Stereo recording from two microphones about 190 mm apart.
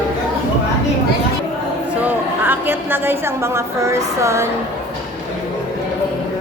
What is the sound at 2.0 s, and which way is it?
A woman's voice, 10° right (ahead or behind).